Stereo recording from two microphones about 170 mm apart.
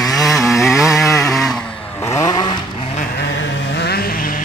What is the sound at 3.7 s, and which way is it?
Vehicle, 70° left (ahead or behind).